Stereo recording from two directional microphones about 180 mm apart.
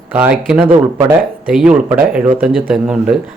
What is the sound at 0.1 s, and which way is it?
Speech, 10° right (ahead or behind).